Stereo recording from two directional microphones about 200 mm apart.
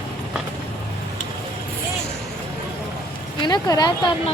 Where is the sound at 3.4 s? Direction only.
20° left (ahead or behind).